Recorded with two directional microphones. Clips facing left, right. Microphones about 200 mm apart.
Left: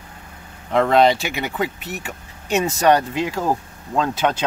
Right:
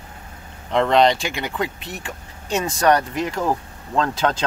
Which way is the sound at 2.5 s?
25° left (ahead or behind).